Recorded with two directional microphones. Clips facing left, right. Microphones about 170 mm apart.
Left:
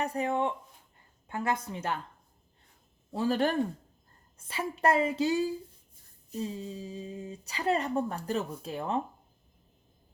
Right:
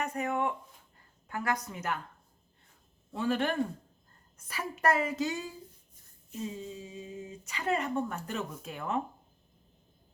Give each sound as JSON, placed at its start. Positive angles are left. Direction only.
{"t": 0.0, "sound": "a woman's voice", "side_deg": 30}
{"t": 3.1, "sound": "a woman's voice", "side_deg": 35}